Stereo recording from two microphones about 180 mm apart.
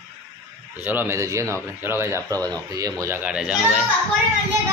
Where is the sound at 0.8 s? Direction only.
10° right (ahead or behind).